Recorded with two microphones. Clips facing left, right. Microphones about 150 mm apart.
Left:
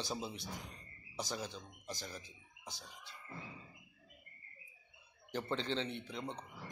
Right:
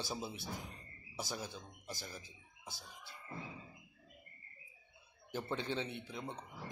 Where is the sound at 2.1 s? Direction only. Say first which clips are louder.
Left 1 dB; 15° left (ahead or behind).